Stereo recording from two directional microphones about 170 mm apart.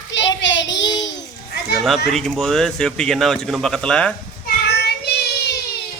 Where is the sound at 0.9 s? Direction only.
90° left.